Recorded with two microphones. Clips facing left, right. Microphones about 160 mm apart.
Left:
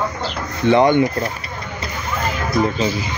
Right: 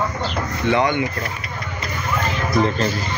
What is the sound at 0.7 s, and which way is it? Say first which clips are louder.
Speech: left 6 dB; 30° left (ahead or behind).